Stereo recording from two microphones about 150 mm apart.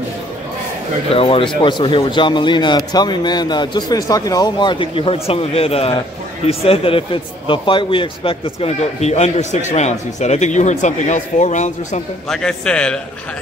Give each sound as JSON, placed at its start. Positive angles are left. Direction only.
{"t": 1.1, "sound": "speech", "side_deg": 40}
{"t": 12.3, "sound": "a man's voice", "side_deg": 5}